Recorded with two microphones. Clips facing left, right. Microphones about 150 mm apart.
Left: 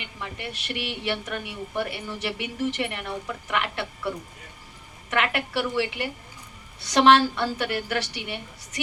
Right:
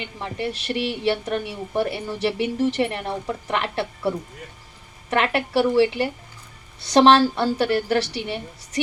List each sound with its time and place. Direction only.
0.0 s a woman's voice: 35° right (ahead or behind)
5.1 s a woman's voice: 35° right (ahead or behind)